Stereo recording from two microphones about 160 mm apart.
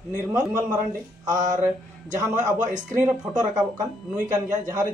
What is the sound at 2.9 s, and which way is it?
Speech, 20° right (ahead or behind).